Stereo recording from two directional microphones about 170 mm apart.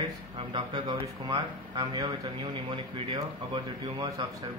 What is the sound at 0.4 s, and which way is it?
Speech, 30° right (ahead or behind).